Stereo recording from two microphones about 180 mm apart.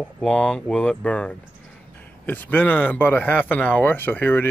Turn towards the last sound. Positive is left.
turn(degrees=10)  # may be behind; listen again after turning